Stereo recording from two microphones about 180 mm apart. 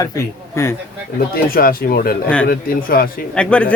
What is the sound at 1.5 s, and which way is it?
Speech, 55° left (ahead or behind).